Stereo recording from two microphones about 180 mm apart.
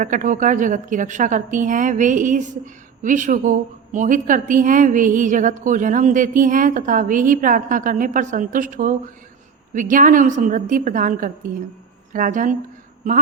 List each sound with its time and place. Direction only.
0.0 s a woman's voice: 45° right (ahead or behind)